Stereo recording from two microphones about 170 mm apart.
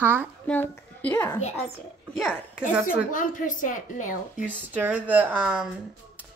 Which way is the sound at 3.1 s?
50° left (ahead or behind).